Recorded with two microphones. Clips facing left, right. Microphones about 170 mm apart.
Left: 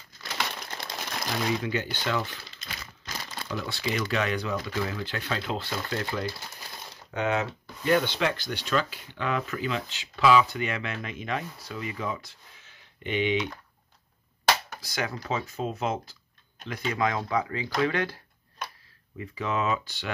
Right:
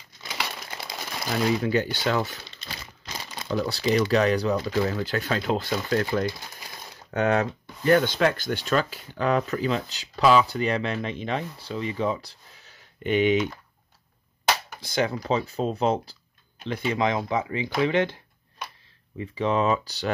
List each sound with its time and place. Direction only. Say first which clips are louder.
0.2 s crumpling: even; 5° right (ahead or behind)
1.6 s speech: right 6 dB; 40° right (ahead or behind)
3.4 s speech: right 8 dB; 35° right (ahead or behind)
14.8 s speech: right 7 dB; 25° right (ahead or behind)